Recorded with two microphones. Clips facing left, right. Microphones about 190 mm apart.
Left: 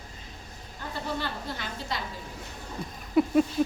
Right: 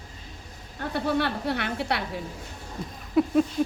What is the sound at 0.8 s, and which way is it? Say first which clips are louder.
A woman's voice: right 7 dB; 65° right (ahead or behind).